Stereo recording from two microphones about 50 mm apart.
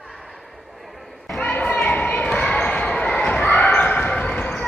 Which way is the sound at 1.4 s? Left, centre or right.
Left.